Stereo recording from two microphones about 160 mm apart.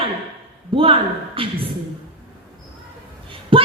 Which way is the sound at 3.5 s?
35° right (ahead or behind).